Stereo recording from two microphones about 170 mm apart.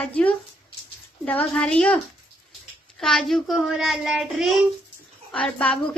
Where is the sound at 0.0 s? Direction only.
5° left (ahead or behind).